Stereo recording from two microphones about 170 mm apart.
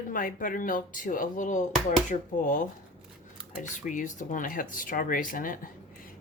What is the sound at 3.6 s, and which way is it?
Speech, 50° left (ahead or behind).